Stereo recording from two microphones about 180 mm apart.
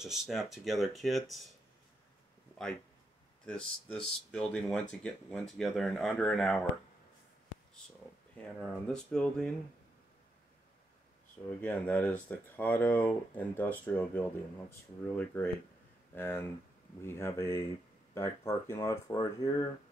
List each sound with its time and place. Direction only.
0.0 s speech: centre (ahead or behind)
3.4 s speech: 5° left (ahead or behind)
8.4 s speech: 5° left (ahead or behind)
11.6 s speech: 10° left (ahead or behind)